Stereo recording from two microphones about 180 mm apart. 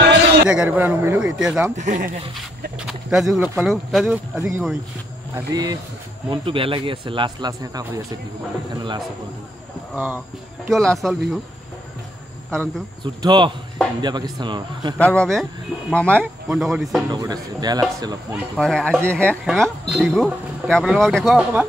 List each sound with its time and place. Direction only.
0.5 s a man's voice: 10° right (ahead or behind)
1.8 s speech: 45° right (ahead or behind)
2.9 s speech: centre (ahead or behind)
4.4 s a man's voice: 15° right (ahead or behind)
9.9 s a man's voice: 10° right (ahead or behind)
10.7 s speech: centre (ahead or behind)
12.4 s speech: 5° left (ahead or behind)
13.0 s a man's voice: 25° right (ahead or behind)
15.0 s speech: 5° left (ahead or behind)
17.1 s a man's voice: 20° right (ahead or behind)
18.6 s speech: 5° left (ahead or behind)